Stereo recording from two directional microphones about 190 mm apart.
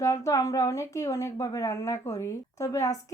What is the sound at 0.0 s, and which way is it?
A woman's voice, 15° left (ahead or behind).